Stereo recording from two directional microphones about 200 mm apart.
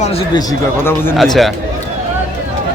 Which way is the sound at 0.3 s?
10° left (ahead or behind).